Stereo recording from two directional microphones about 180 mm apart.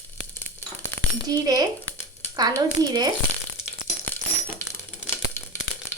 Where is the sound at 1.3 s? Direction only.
20° right (ahead or behind).